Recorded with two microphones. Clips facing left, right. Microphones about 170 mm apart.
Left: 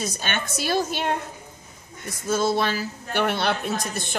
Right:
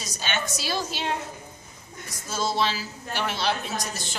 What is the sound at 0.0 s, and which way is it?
A woman's voice, 55° left (ahead or behind).